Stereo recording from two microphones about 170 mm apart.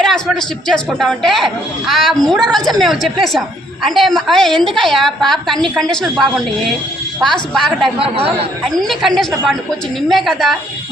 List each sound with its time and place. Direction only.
0.0 s speech: centre (ahead or behind)
7.5 s speech: centre (ahead or behind)
7.9 s speech: 35° right (ahead or behind)
8.6 s speech: centre (ahead or behind)